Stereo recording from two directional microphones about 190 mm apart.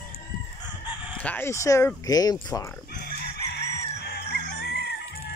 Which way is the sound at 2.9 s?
55° left (ahead or behind).